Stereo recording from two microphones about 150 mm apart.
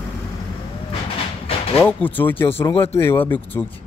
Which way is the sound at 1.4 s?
40° left (ahead or behind).